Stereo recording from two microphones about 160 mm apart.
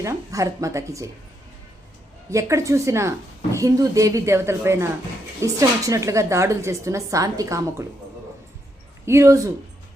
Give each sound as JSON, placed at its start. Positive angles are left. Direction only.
{"t": 0.0, "sound": "a woman's voice", "side_deg": -20}
{"t": 2.3, "sound": "a woman's voice", "side_deg": -20}
{"t": 9.0, "sound": "a woman's voice", "side_deg": -20}